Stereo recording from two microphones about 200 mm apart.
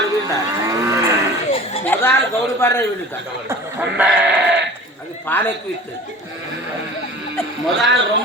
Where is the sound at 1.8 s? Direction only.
10° left (ahead or behind).